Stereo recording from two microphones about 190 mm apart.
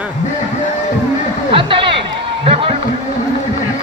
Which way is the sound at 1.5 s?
25° right (ahead or behind).